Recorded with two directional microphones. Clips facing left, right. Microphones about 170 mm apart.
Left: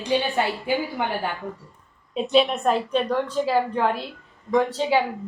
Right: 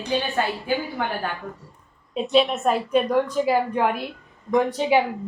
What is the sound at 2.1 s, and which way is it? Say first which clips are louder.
A woman's voice: even; centre (ahead or behind).